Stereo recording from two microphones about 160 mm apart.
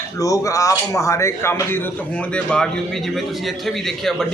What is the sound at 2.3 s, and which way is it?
A man's voice, 5° left (ahead or behind).